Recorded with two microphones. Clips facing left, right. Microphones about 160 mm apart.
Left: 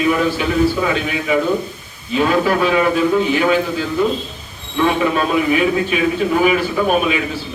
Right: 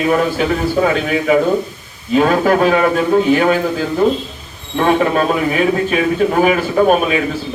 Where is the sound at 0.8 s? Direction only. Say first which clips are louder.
Right 5 dB; 45° right (ahead or behind).